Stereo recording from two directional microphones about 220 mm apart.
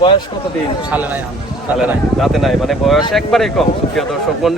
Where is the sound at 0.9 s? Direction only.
10° right (ahead or behind).